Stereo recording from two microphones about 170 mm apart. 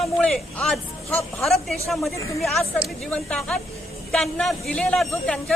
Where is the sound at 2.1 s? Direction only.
20° left (ahead or behind).